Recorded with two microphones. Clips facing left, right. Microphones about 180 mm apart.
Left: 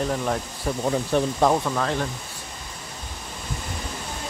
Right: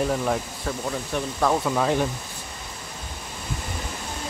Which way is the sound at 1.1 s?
35° left (ahead or behind).